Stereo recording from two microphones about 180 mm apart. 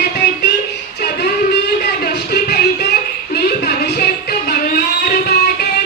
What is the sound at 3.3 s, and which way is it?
Music, 65° left (ahead or behind).